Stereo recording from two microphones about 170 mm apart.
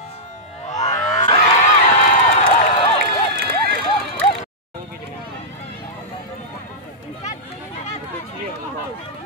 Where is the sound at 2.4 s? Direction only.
30° left (ahead or behind).